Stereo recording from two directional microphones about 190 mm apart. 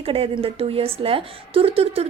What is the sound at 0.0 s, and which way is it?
A woman's voice, 30° right (ahead or behind).